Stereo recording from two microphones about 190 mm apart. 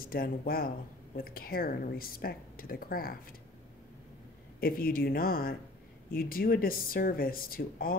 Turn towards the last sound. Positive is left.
turn(degrees=50)  # may be behind; listen again after turning